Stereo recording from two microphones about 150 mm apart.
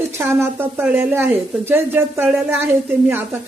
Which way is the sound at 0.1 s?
15° right (ahead or behind).